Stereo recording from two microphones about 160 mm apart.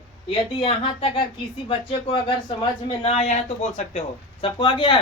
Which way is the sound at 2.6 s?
40° left (ahead or behind).